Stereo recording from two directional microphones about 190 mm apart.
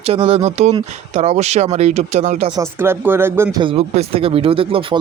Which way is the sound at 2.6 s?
10° right (ahead or behind).